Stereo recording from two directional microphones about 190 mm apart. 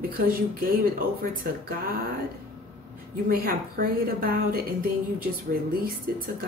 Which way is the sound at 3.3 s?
50° right (ahead or behind).